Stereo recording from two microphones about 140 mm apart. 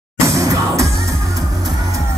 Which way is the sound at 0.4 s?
25° right (ahead or behind).